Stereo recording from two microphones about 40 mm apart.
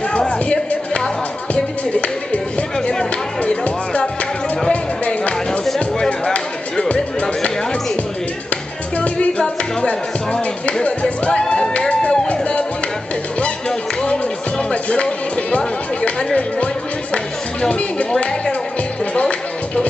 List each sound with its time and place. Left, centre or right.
1.5 s music: left
2.9 s music: centre
5.0 s music: left
5.9 s music: centre
6.9 s music: left
8.9 s music: left
14.0 s music: left